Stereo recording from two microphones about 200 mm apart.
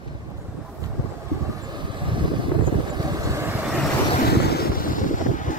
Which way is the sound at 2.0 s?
25° right (ahead or behind).